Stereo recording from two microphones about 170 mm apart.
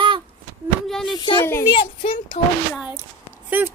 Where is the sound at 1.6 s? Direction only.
30° left (ahead or behind).